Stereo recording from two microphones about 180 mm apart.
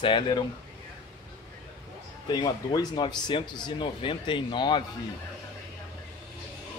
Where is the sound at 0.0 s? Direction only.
30° left (ahead or behind).